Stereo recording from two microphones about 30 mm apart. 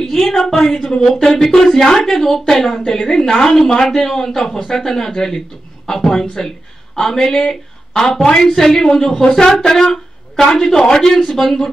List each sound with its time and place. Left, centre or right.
0.0 s speech: centre